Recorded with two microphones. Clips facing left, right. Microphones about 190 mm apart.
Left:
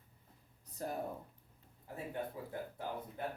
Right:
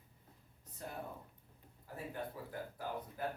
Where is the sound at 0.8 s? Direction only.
40° left (ahead or behind).